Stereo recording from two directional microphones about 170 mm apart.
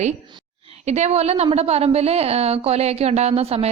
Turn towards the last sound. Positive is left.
turn(degrees=-35)  # may be behind; listen again after turning